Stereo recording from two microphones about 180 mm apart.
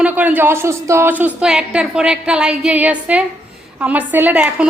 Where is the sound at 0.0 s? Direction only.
10° right (ahead or behind).